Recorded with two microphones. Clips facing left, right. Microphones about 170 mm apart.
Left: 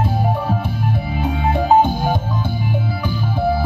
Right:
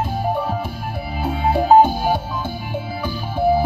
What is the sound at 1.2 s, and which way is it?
Music, 10° right (ahead or behind).